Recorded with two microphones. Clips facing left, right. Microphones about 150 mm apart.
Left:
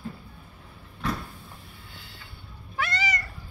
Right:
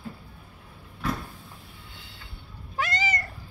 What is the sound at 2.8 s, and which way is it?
Cat, 45° right (ahead or behind).